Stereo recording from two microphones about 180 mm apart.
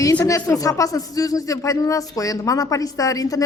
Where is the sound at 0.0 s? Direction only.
20° left (ahead or behind).